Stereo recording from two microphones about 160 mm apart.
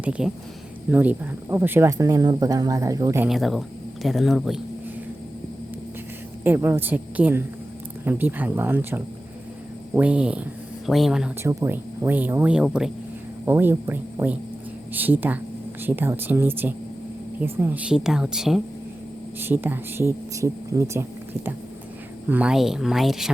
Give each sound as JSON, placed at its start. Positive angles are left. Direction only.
{"t": 0.0, "sound": "speech", "side_deg": -5}
{"t": 3.2, "sound": "a woman's voice", "side_deg": 0}
{"t": 6.4, "sound": "a woman's voice", "side_deg": -15}
{"t": 11.4, "sound": "a woman's voice", "side_deg": -15}
{"t": 19.4, "sound": "speech", "side_deg": -15}
{"t": 22.3, "sound": "a woman's voice", "side_deg": -5}